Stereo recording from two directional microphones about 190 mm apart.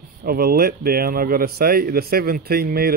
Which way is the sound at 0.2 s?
50° right (ahead or behind).